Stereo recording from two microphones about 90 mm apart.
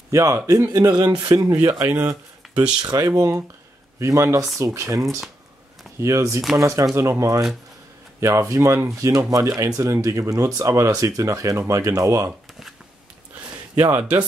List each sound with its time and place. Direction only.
0.1 s a man's voice: 35° right (ahead or behind)
1.5 s speech: 35° right (ahead or behind)
1.9 s speech: 20° right (ahead or behind)
2.4 s a sound: centre (ahead or behind)
2.8 s speech: 40° right (ahead or behind)
13.3 s a sound: 25° right (ahead or behind)